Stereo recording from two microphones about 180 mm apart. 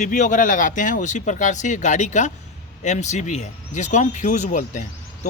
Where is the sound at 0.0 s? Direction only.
45° left (ahead or behind).